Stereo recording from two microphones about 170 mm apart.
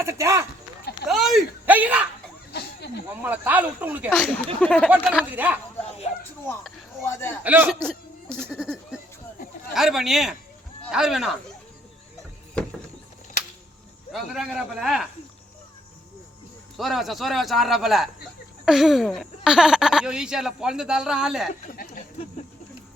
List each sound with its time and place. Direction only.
0.0 s speech: 15° right (ahead or behind)
1.0 s a sound: centre (ahead or behind)
2.5 s a sound: 70° left (ahead or behind)
3.2 s speech: 10° right (ahead or behind)
4.1 s a woman's voice: 5° left (ahead or behind)
4.9 s speech: 5° right (ahead or behind)
7.1 s speech: 15° left (ahead or behind)
7.4 s speech: 10° right (ahead or behind)
7.8 s music: 5° left (ahead or behind)
9.7 s a woman's voice: centre (ahead or behind)
14.1 s a woman's voice: centre (ahead or behind)
16.7 s a woman's voice: centre (ahead or behind)